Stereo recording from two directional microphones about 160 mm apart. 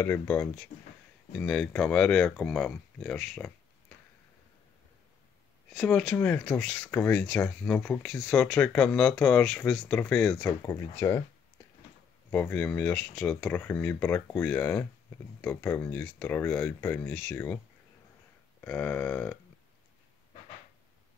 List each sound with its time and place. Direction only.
0.0 s speech: 15° left (ahead or behind)
5.7 s speech: 5° left (ahead or behind)
10.6 s speech: 20° left (ahead or behind)
12.3 s speech: 10° left (ahead or behind)
18.6 s speech: 10° left (ahead or behind)